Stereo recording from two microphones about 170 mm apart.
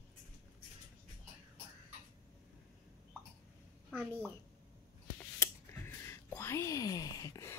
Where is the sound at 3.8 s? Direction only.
5° left (ahead or behind).